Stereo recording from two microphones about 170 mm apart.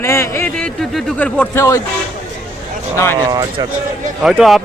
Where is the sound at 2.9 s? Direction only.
15° left (ahead or behind).